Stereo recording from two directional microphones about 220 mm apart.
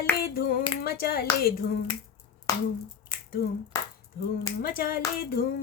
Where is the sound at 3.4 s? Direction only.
45° left (ahead or behind).